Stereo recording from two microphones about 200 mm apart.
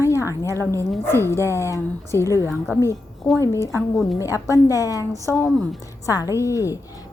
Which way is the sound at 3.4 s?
15° left (ahead or behind).